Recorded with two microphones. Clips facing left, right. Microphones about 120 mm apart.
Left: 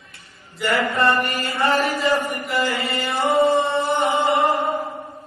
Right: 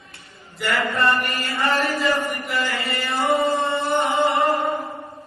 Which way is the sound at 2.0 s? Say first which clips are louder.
Left 1 dB; centre (ahead or behind).